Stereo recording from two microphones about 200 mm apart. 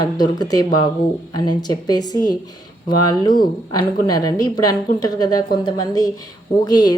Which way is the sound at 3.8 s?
20° left (ahead or behind).